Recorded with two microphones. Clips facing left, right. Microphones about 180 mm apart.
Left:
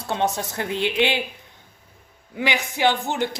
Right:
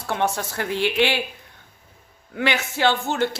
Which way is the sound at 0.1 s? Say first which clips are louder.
Even; 20° left (ahead or behind).